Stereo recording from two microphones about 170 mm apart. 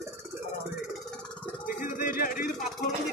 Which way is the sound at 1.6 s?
55° left (ahead or behind).